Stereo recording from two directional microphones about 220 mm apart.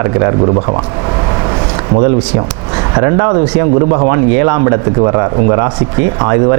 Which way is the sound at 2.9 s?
20° right (ahead or behind).